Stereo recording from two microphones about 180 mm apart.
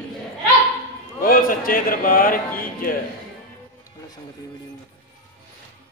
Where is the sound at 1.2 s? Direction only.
50° left (ahead or behind).